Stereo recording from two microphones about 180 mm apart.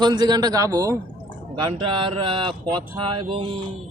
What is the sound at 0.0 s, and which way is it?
Speech, 25° right (ahead or behind).